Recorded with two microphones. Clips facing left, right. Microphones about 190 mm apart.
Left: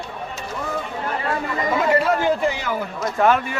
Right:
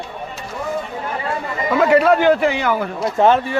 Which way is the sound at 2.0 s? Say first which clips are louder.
Right 6 dB; 70° right (ahead or behind).